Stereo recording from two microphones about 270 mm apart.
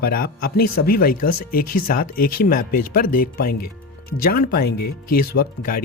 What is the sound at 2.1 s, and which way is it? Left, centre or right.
Speech, left.